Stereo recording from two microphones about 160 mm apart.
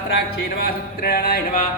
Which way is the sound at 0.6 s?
70° left (ahead or behind).